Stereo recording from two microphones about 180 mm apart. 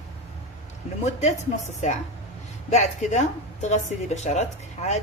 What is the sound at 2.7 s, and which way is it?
A woman's voice, 40° left (ahead or behind).